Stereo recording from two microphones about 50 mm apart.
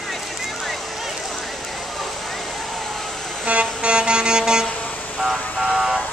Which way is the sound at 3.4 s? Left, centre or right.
Right.